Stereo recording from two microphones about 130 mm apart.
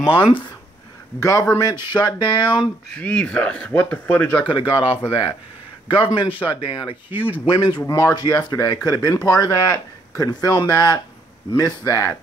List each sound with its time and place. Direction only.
0.0 s speech: 45° left (ahead or behind)
1.6 s speech: 30° left (ahead or behind)
3.0 s speech: 10° left (ahead or behind)
4.5 s speech: 40° left (ahead or behind); by 12.2 s 25° left (ahead or behind)